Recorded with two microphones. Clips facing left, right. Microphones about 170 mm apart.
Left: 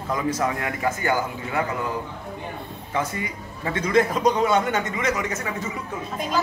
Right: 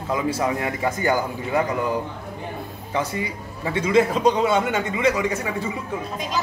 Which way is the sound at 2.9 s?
25° right (ahead or behind).